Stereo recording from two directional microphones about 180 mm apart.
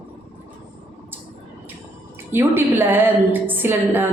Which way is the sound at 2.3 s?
10° right (ahead or behind).